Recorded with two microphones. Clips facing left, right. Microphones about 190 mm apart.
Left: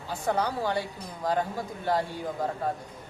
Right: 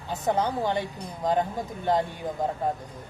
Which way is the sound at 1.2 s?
20° right (ahead or behind).